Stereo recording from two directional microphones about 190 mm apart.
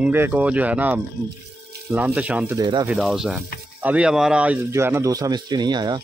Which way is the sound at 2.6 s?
25° right (ahead or behind).